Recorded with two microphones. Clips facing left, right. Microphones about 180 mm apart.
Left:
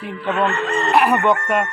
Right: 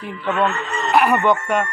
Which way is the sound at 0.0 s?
Centre (ahead or behind).